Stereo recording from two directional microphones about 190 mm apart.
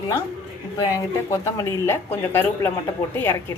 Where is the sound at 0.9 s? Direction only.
15° left (ahead or behind).